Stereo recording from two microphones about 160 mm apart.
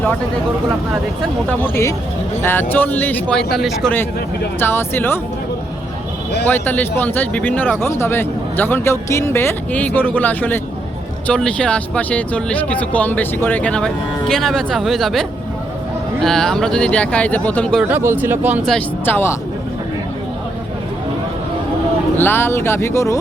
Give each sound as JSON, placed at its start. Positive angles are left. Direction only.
{"t": 1.6, "sound": "speech", "side_deg": 15}
{"t": 4.6, "sound": "speech", "side_deg": 15}
{"t": 6.4, "sound": "speech", "side_deg": 10}
{"t": 17.8, "sound": "speech", "side_deg": -15}
{"t": 19.0, "sound": "speech", "side_deg": 15}
{"t": 22.2, "sound": "speech", "side_deg": 15}